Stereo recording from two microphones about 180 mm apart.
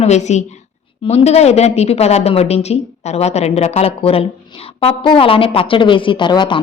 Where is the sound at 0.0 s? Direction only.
40° left (ahead or behind).